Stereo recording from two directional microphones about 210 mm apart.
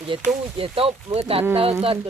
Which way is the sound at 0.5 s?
25° right (ahead or behind).